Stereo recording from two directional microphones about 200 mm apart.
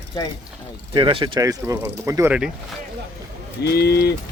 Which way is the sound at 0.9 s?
25° right (ahead or behind).